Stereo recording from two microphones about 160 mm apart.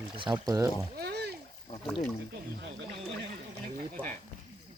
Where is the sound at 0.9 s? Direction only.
90° right.